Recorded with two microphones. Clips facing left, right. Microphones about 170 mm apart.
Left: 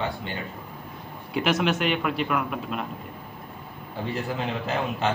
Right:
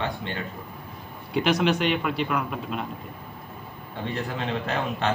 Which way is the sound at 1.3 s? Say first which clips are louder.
Right 2 dB; centre (ahead or behind).